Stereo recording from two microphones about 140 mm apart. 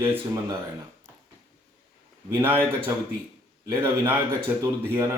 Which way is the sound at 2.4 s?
15° right (ahead or behind).